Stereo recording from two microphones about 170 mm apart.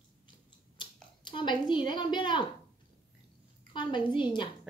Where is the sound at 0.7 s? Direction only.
30° left (ahead or behind).